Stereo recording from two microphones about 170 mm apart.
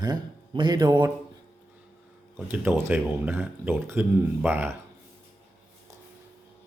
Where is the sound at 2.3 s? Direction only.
10° right (ahead or behind).